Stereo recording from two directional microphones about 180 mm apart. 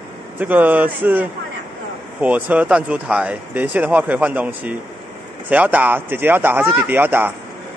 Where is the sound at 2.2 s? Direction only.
10° right (ahead or behind).